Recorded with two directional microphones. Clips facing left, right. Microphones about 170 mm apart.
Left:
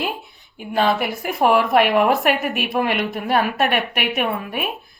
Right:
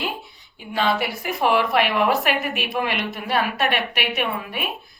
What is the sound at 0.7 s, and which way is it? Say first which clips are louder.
A woman's voice: left 3 dB; 50° left (ahead or behind).